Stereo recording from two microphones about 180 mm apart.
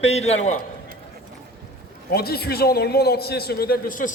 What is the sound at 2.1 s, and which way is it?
A man's voice, 60° left (ahead or behind).